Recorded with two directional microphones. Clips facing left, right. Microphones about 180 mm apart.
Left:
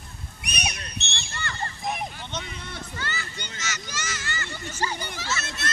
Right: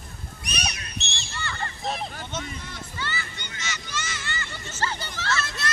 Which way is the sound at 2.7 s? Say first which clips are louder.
Even; 50° left (ahead or behind).